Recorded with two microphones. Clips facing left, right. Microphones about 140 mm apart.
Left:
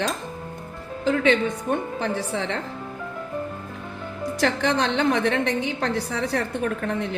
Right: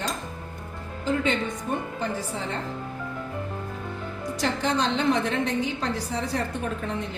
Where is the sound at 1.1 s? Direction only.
75° left (ahead or behind).